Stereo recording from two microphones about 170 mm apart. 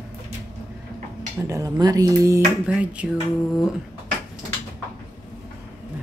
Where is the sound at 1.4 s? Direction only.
20° right (ahead or behind).